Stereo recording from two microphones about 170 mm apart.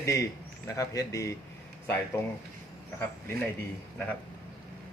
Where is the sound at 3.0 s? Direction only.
10° left (ahead or behind).